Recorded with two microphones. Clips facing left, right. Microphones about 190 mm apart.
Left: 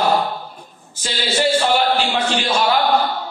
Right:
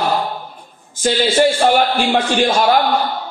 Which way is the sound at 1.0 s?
50° right (ahead or behind).